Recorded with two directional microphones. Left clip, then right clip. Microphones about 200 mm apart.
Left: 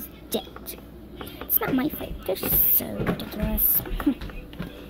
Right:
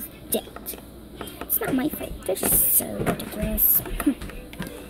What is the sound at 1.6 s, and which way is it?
A child's voice, centre (ahead or behind).